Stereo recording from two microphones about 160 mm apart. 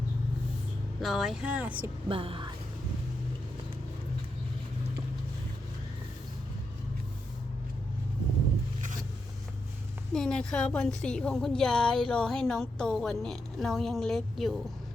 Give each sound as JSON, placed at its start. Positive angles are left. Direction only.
{"t": 1.0, "sound": "speech", "side_deg": 0}
{"t": 2.0, "sound": "speech", "side_deg": -35}
{"t": 10.1, "sound": "a woman's voice", "side_deg": 5}